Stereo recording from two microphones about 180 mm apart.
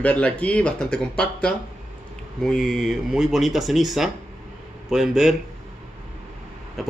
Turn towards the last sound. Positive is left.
turn(degrees=0)  # may be behind; listen again after turning